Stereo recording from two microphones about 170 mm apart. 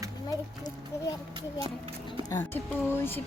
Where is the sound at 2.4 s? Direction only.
10° left (ahead or behind).